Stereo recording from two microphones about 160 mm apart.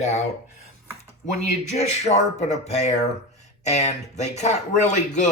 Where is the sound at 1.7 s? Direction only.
45° left (ahead or behind).